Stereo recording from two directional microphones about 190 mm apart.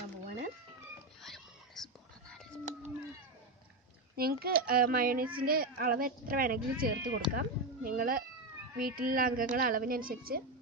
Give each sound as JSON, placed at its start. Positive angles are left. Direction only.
{"t": 1.2, "sound": "whispering", "side_deg": 0}
{"t": 4.2, "sound": "speech", "side_deg": -55}